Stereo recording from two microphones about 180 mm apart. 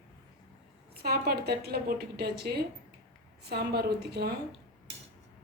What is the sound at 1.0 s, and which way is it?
A woman's voice, 60° right (ahead or behind).